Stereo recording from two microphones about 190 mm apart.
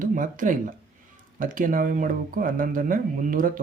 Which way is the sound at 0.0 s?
45° right (ahead or behind).